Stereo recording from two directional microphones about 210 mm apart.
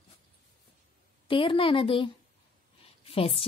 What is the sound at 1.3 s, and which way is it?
A woman's voice, 25° left (ahead or behind).